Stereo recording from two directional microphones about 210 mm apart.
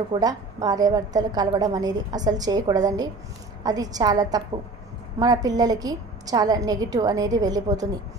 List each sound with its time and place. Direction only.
0.1 s a woman's voice: 20° right (ahead or behind)